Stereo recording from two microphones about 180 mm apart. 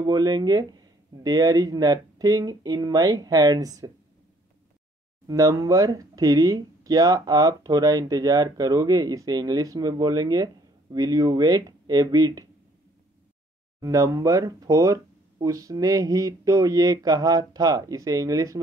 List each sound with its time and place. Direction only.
0.0 s speech: 20° right (ahead or behind)
5.2 s speech: 20° right (ahead or behind)
13.7 s speech: 15° right (ahead or behind)